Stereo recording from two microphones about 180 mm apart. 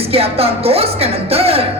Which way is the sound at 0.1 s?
35° right (ahead or behind).